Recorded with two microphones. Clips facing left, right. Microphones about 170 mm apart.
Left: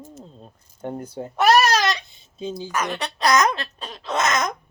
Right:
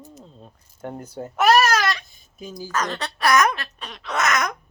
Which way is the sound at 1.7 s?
20° left (ahead or behind).